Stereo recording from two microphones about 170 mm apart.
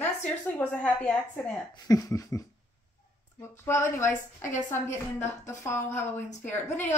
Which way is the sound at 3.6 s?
15° left (ahead or behind).